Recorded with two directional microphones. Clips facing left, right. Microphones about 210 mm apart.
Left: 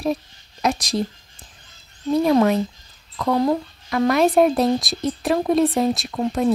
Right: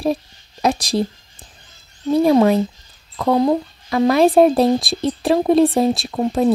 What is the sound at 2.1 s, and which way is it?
Speech, 30° right (ahead or behind).